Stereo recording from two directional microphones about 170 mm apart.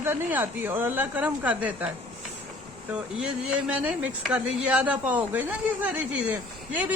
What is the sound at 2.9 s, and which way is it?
Speech, 5° right (ahead or behind).